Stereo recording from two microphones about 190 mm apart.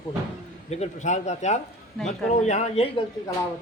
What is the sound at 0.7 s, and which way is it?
A man's voice, 35° left (ahead or behind).